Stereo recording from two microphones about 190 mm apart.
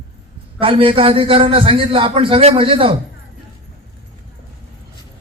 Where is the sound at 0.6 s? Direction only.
25° right (ahead or behind).